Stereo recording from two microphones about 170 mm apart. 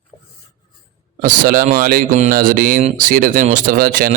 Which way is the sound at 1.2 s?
55° right (ahead or behind).